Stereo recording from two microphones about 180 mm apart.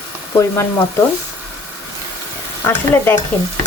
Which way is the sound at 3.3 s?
5° left (ahead or behind).